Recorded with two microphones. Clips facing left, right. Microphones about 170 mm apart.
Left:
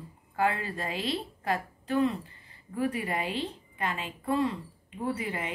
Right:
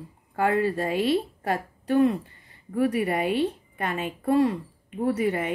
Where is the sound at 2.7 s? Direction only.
65° right (ahead or behind).